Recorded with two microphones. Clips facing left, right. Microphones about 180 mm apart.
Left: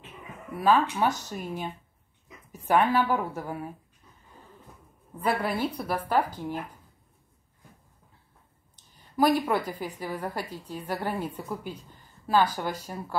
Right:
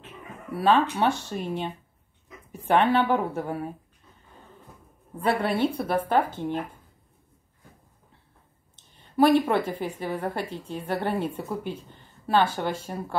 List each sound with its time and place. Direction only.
0.5 s a woman's voice: 30° right (ahead or behind)
5.2 s a woman's voice: 25° right (ahead or behind)
8.7 s a woman's voice: 25° right (ahead or behind)